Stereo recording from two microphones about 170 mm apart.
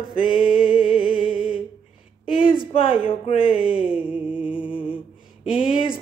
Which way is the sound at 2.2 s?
30° left (ahead or behind).